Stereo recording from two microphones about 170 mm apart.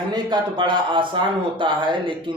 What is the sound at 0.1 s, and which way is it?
Speech, 25° right (ahead or behind).